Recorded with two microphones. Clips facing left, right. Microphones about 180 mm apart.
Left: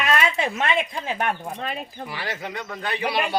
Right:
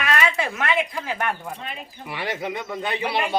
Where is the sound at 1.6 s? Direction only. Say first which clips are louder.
Left 5 dB; 40° left (ahead or behind).